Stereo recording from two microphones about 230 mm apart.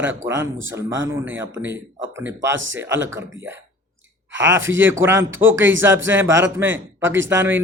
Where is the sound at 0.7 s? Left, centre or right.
Centre.